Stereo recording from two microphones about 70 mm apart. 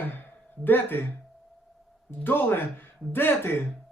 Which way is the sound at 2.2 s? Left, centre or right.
Left.